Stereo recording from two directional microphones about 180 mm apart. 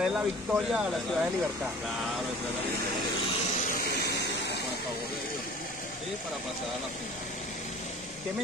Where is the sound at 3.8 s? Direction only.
65° left (ahead or behind).